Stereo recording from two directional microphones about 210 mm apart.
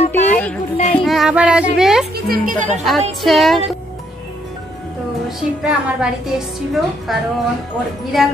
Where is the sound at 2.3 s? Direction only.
40° right (ahead or behind).